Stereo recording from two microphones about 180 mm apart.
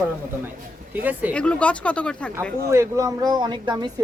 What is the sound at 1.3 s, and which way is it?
Speech, 5° left (ahead or behind).